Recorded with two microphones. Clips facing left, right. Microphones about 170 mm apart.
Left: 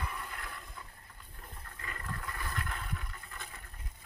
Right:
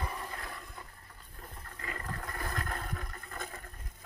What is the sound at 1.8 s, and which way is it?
Boat, 35° right (ahead or behind).